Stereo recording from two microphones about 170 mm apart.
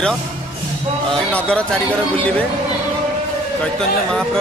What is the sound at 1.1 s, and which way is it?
Speech, 5° left (ahead or behind).